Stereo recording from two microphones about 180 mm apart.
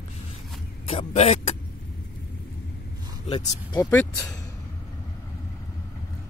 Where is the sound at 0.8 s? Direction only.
35° left (ahead or behind).